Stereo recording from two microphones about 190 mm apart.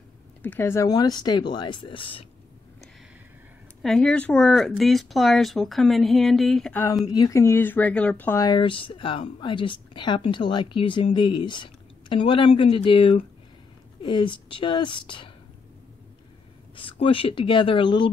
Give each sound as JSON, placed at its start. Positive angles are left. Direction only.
{"t": 0.4, "sound": "speech", "side_deg": 10}
{"t": 3.8, "sound": "speech", "side_deg": 5}
{"t": 16.7, "sound": "speech", "side_deg": 30}